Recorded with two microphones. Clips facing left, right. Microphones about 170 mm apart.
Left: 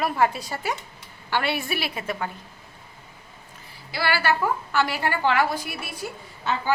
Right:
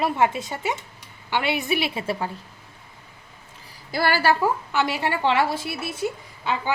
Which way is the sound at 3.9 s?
45° right (ahead or behind).